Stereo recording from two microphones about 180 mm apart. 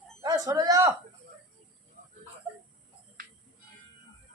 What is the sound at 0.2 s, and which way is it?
Speech, 20° right (ahead or behind).